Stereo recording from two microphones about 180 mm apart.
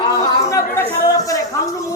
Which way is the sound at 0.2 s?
15° left (ahead or behind).